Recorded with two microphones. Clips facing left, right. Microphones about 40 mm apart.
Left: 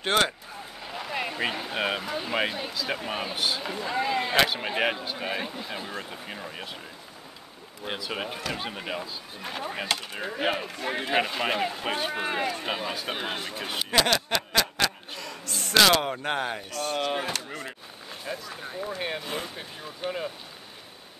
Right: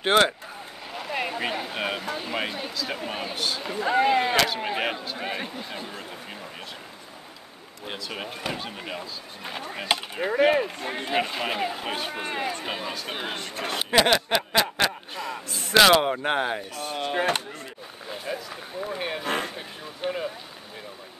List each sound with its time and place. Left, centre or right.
0.0 s speech: centre
0.8 s a sound: centre
1.4 s speech: centre
3.8 s speech: right
4.5 s speech: centre
7.8 s speech: centre
14.0 s speech: centre
18.1 s speech: centre
19.2 s a sound: right
20.0 s speech: centre